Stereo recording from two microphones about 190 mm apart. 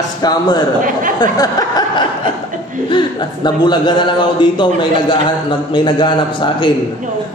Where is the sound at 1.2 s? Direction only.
20° left (ahead or behind).